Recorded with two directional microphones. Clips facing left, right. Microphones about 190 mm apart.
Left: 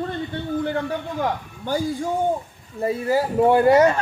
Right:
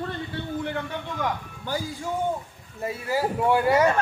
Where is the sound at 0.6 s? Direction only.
35° left (ahead or behind).